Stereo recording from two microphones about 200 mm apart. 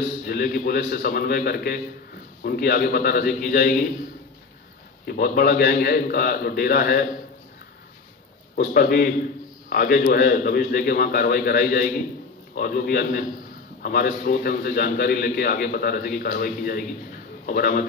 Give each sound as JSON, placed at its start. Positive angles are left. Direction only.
{"t": 0.3, "sound": "a man's voice", "side_deg": 50}
{"t": 5.0, "sound": "a man's voice", "side_deg": 50}
{"t": 8.5, "sound": "a man's voice", "side_deg": 50}